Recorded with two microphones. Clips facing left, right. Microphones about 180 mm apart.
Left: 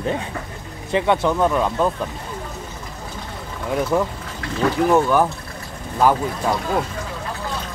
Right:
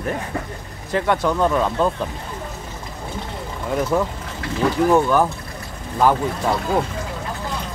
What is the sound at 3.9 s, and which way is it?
Speech, 5° left (ahead or behind).